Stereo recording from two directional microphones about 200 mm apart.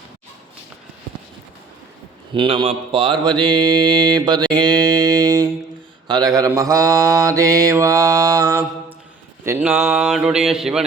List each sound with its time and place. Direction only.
2.3 s mantra: 25° right (ahead or behind); by 10.8 s centre (ahead or behind)